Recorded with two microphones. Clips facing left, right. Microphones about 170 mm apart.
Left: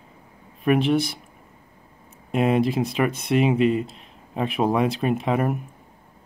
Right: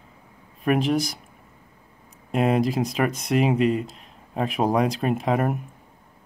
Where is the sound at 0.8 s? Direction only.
40° right (ahead or behind).